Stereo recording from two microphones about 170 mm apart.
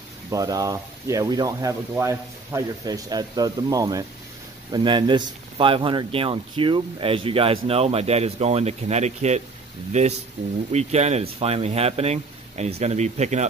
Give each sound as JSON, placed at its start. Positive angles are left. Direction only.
{"t": 0.3, "sound": "speech", "side_deg": -20}